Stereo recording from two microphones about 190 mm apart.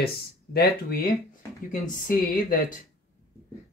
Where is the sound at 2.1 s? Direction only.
45° left (ahead or behind).